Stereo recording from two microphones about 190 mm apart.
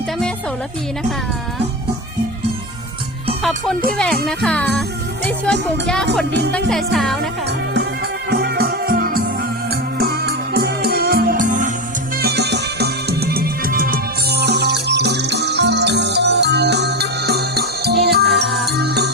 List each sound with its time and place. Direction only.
3.9 s speech: 5° left (ahead or behind)
8.3 s music: 55° right (ahead or behind)
12.2 s music: 60° right (ahead or behind)